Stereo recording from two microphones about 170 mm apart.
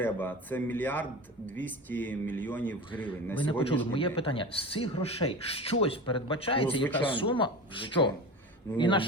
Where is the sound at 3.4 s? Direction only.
30° left (ahead or behind).